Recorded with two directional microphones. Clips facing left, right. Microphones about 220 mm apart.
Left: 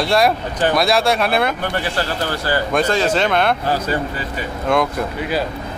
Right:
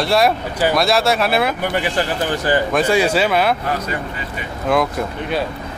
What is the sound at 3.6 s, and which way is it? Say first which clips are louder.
Speech: left 3 dB; 30° left (ahead or behind).